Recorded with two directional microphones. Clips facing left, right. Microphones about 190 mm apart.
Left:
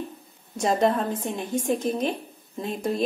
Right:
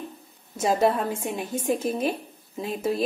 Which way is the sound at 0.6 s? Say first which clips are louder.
Even; 5° right (ahead or behind).